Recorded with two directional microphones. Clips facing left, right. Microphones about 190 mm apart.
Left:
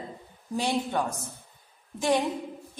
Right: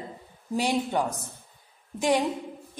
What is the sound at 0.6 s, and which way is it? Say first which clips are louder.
A woman's voice: right 2 dB; 15° right (ahead or behind).